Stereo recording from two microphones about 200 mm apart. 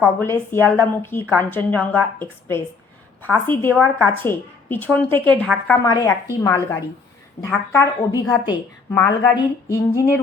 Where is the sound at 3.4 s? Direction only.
10° left (ahead or behind).